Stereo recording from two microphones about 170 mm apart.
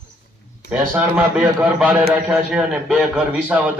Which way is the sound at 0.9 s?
10° right (ahead or behind).